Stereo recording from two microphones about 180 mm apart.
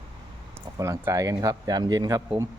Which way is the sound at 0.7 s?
15° right (ahead or behind).